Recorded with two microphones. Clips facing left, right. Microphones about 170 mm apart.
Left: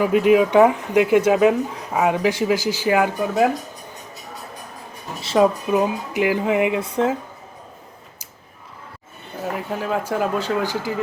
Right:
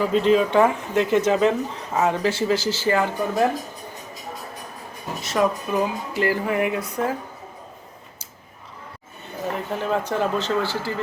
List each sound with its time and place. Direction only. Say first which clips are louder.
0.0 s speech: left 3 dB; 10° left (ahead or behind)
5.2 s speech: left 5 dB; 30° left (ahead or behind)
5.7 s speech: left 4 dB; 15° left (ahead or behind)
9.5 s speech: even; 5° left (ahead or behind)